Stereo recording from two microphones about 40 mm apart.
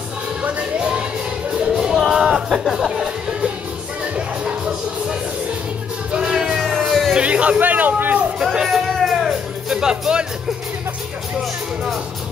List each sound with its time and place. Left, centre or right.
0.4 s music: right
0.7 s music: right
4.5 s music: right
6.1 s music: centre
6.6 s music: centre
7.2 s music: right
8.6 s music: centre
9.7 s music: centre